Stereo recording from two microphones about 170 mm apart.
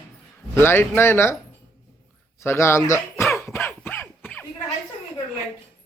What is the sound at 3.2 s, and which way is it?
Cough, 15° left (ahead or behind).